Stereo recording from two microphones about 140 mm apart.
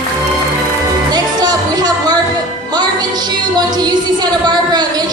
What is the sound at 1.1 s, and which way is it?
Music, 30° right (ahead or behind).